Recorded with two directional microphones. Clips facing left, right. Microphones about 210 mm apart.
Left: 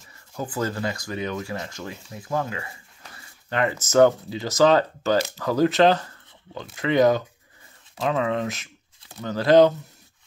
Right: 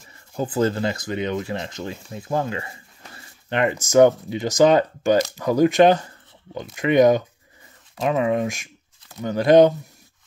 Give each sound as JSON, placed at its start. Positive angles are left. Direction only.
{"t": 0.4, "sound": "speech", "side_deg": -25}